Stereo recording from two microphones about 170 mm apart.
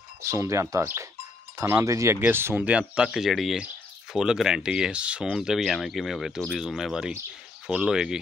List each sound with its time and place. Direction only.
0.2 s speech: 15° right (ahead or behind)